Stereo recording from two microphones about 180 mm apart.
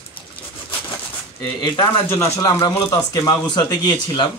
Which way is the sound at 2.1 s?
15° left (ahead or behind).